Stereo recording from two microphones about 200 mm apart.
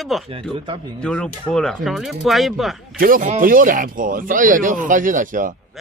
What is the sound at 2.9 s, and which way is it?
Speech, 45° right (ahead or behind).